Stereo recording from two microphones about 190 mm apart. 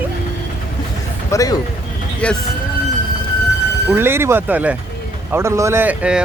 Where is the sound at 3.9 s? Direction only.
10° right (ahead or behind).